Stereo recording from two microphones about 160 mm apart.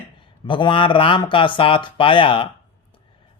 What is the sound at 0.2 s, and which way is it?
A man's voice, 30° left (ahead or behind).